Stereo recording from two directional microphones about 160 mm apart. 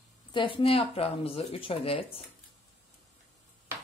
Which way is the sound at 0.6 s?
35° left (ahead or behind).